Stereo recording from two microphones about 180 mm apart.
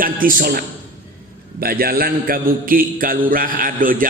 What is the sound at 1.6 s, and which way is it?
A man's voice, 55° right (ahead or behind).